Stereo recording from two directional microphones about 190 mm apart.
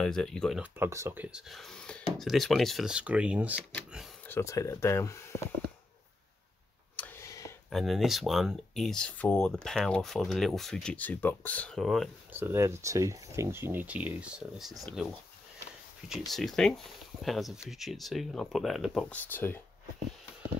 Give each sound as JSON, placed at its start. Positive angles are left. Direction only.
{"t": 0.0, "sound": "speech", "side_deg": 5}
{"t": 0.6, "sound": "speech", "side_deg": -15}
{"t": 3.9, "sound": "a sound", "side_deg": 0}
{"t": 4.3, "sound": "speech", "side_deg": 15}
{"t": 7.0, "sound": "a sound", "side_deg": 10}
{"t": 7.7, "sound": "speech", "side_deg": 0}
{"t": 12.3, "sound": "speech", "side_deg": -10}